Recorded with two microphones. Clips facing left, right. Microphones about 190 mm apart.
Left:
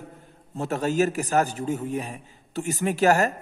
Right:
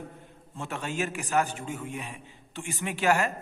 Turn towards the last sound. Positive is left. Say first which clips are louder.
# left 6 dB
turn(degrees=40)  # may be behind; listen again after turning